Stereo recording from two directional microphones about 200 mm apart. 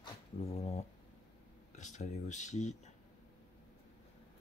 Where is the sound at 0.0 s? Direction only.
30° left (ahead or behind).